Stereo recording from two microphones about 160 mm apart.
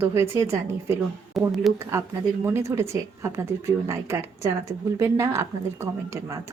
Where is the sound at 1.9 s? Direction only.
15° right (ahead or behind).